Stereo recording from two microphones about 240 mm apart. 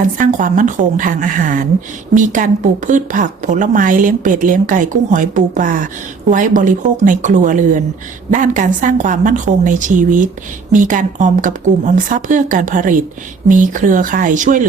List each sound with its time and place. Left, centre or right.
0.0 s a woman's voice: right